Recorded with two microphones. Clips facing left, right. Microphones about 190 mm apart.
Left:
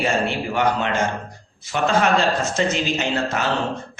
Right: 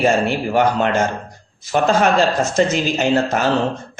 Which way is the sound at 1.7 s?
45° right (ahead or behind).